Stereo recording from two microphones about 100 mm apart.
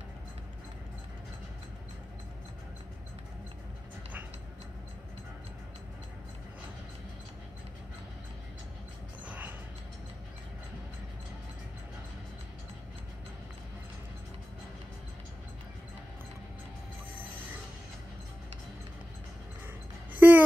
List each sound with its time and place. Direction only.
9.2 s music: 15° right (ahead or behind)
20.1 s music: 15° right (ahead or behind)